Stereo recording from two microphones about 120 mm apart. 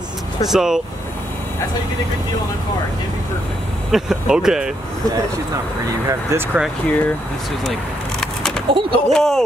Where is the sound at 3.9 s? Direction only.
5° right (ahead or behind).